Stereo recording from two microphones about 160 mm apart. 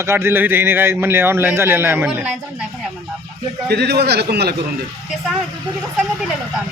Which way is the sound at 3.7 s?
90° right.